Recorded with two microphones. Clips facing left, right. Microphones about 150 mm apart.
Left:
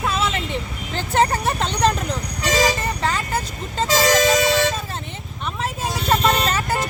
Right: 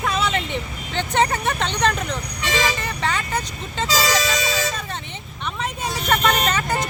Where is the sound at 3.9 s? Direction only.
50° left (ahead or behind).